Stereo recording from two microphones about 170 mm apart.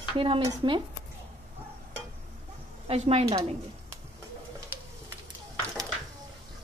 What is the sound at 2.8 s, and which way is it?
Speech, 40° right (ahead or behind).